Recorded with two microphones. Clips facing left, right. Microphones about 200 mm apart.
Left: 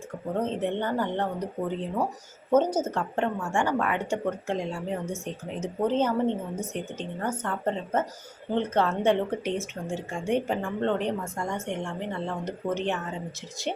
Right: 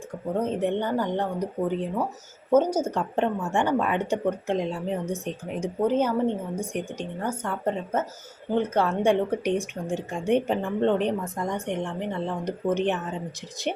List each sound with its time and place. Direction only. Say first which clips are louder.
0.3 s a woman's voice: right 2 dB; 10° right (ahead or behind)
2.5 s a woman's voice: right 2 dB; 10° right (ahead or behind)